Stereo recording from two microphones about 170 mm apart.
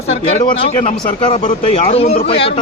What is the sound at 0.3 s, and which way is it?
Speech, 35° left (ahead or behind).